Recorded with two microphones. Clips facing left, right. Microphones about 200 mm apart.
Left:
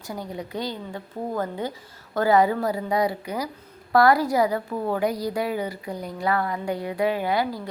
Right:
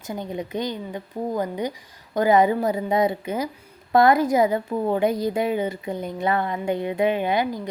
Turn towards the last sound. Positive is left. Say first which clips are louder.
# right 2 dB
turn(degrees=-20)  # may be behind; listen again after turning